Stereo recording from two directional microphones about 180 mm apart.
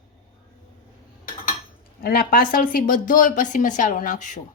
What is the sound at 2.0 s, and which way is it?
A woman's voice, 55° left (ahead or behind).